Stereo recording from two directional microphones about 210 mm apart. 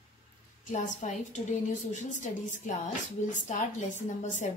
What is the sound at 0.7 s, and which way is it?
A woman's voice, 35° left (ahead or behind).